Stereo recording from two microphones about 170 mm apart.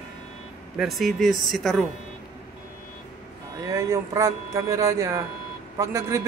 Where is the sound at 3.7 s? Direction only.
20° right (ahead or behind).